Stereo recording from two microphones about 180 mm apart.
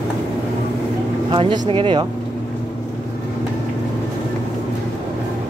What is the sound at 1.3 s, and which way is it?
Speech, 25° right (ahead or behind).